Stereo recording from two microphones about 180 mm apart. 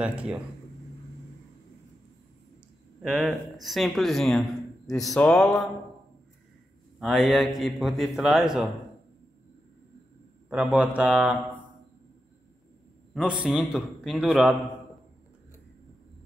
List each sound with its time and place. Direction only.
0.0 s speech: 5° right (ahead or behind)
3.0 s a man's voice: centre (ahead or behind)
7.0 s a man's voice: centre (ahead or behind)
10.5 s speech: 10° right (ahead or behind)
13.1 s a man's voice: 5° right (ahead or behind)